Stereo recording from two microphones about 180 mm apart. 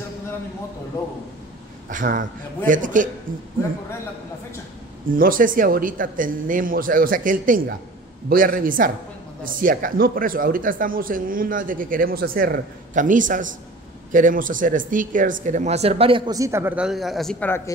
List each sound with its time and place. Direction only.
1.9 s speech: 45° right (ahead or behind)
5.1 s speech: 50° right (ahead or behind); by 17.7 s 10° left (ahead or behind)